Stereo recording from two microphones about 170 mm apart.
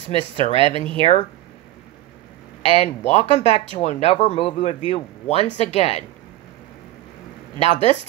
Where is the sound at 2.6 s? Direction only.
40° left (ahead or behind).